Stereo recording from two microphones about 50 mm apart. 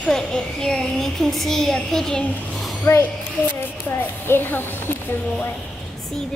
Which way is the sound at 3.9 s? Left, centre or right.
Left.